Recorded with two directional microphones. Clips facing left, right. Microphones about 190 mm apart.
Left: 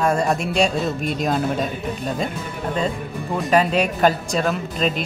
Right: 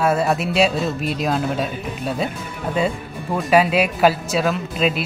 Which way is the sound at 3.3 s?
5° right (ahead or behind).